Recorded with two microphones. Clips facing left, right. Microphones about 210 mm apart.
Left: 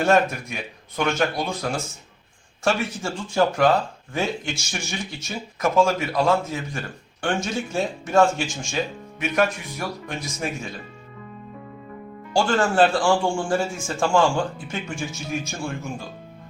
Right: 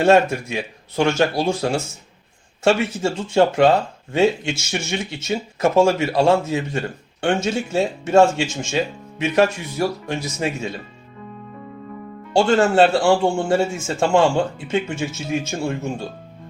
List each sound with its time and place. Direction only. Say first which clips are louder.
0.0 s speech: right 5 dB; 25° right (ahead or behind)
12.3 s speech: right 5 dB; 25° right (ahead or behind)